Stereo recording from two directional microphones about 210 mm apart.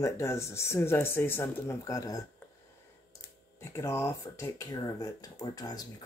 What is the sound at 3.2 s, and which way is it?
Speech, 15° left (ahead or behind).